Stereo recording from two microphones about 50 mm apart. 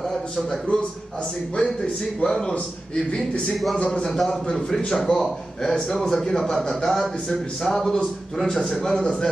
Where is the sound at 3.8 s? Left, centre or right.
Centre.